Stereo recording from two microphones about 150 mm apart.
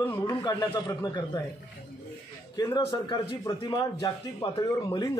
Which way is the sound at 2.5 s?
25° left (ahead or behind).